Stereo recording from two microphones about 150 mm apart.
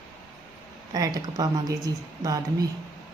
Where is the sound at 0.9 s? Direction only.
25° right (ahead or behind).